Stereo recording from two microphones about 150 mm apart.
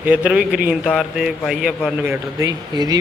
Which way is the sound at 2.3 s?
25° right (ahead or behind).